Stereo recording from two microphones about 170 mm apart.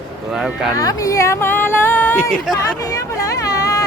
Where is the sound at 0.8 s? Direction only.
20° left (ahead or behind).